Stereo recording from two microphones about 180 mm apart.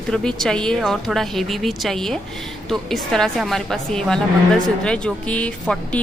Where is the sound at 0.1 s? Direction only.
5° left (ahead or behind).